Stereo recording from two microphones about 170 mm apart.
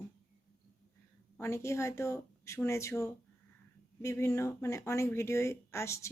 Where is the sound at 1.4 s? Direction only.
15° left (ahead or behind).